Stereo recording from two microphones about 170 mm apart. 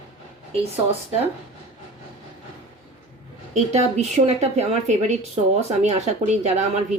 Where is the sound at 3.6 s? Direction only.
40° right (ahead or behind).